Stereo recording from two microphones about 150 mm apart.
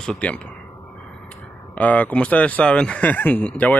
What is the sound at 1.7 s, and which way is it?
Speech, 10° left (ahead or behind).